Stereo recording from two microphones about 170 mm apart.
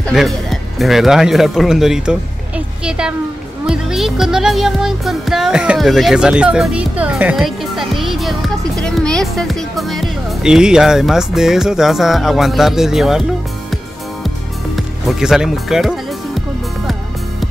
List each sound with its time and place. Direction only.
0.1 s speech: centre (ahead or behind)
3.6 s music: 5° right (ahead or behind)
14.8 s speech: centre (ahead or behind)